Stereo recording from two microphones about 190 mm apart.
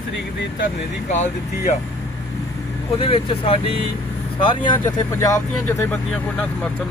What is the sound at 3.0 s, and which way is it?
Speech, 30° left (ahead or behind).